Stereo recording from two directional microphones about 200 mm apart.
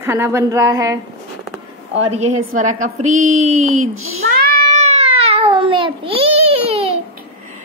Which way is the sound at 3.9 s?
90° right.